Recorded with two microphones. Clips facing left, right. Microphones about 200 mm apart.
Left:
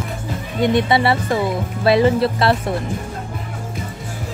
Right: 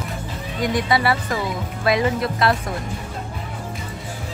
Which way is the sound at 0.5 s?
25° left (ahead or behind).